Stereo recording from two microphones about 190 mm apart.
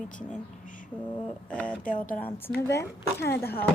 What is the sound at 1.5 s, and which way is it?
Speech, 5° left (ahead or behind).